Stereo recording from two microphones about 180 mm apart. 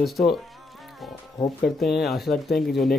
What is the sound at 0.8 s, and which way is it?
Music, centre (ahead or behind).